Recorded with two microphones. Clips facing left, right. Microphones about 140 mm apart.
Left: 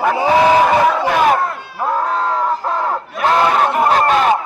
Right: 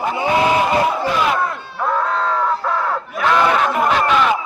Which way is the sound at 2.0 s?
20° left (ahead or behind).